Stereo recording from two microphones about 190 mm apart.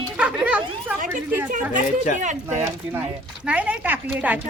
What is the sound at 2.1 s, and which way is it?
Speech, 40° right (ahead or behind).